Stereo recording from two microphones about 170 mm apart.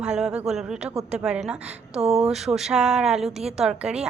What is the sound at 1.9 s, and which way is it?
Speech, 40° right (ahead or behind).